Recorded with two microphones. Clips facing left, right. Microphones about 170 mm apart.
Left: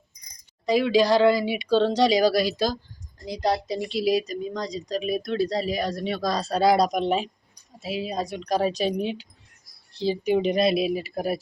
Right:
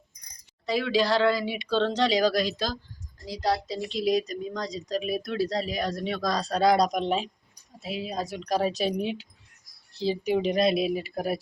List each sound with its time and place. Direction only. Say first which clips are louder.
0.6 s speech: left 5 dB; 15° left (ahead or behind)
3.2 s a woman's voice: left 3 dB; 20° left (ahead or behind)
3.8 s speech: left 1 dB; 5° left (ahead or behind)